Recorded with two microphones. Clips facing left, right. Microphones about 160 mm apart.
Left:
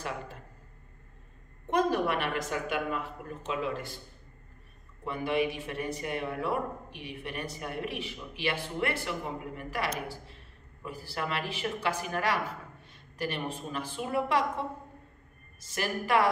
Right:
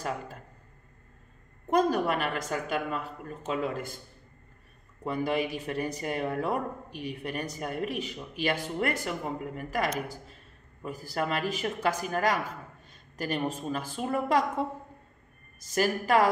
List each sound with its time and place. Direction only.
1.7 s a man's voice: 40° right (ahead or behind)
5.0 s a man's voice: 40° right (ahead or behind)
15.7 s a man's voice: 40° right (ahead or behind)